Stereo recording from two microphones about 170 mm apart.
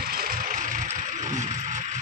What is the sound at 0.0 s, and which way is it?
Vehicle, 60° right (ahead or behind).